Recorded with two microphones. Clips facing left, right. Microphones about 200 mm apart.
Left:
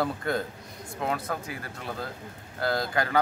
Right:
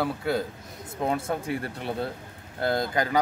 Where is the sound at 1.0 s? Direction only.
25° right (ahead or behind).